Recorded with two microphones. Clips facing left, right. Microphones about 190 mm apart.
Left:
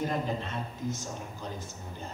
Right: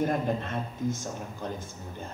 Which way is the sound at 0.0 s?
50° right (ahead or behind).